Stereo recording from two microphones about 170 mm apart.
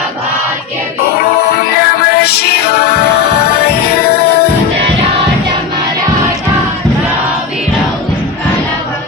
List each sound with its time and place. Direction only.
1.8 s music: 65° left (ahead or behind)